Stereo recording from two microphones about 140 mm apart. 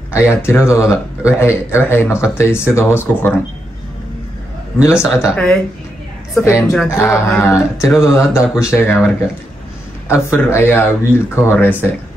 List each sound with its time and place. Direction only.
0.1 s speech: 20° left (ahead or behind)
5.0 s speech: 20° left (ahead or behind)
5.3 s speech: 5° left (ahead or behind)
6.4 s speech: 20° left (ahead or behind)
7.7 s speech: 5° right (ahead or behind)
8.0 s speech: 20° left (ahead or behind)
10.0 s speech: 20° left (ahead or behind)